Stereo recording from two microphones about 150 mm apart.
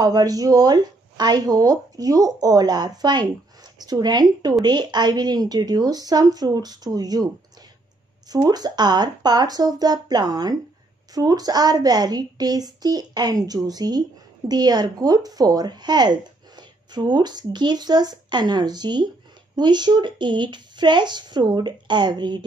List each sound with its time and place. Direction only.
0.0 s speech: 25° right (ahead or behind)
8.3 s speech: 25° right (ahead or behind)